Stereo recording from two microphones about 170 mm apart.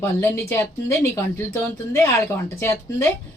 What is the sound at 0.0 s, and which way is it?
Speech, 15° left (ahead or behind).